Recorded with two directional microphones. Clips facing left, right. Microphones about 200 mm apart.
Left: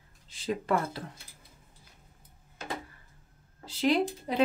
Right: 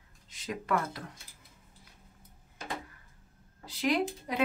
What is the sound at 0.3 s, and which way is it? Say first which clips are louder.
Speech: left 3 dB; 30° left (ahead or behind).